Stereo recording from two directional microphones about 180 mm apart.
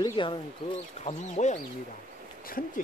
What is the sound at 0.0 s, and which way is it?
Speech, 25° left (ahead or behind).